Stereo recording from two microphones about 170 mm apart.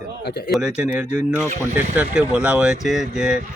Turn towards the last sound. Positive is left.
turn(degrees=-5)  # may be behind; listen again after turning